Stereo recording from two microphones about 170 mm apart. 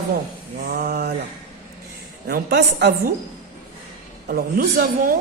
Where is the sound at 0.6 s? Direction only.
65° right (ahead or behind).